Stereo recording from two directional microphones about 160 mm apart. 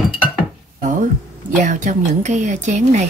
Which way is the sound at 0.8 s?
55° right (ahead or behind).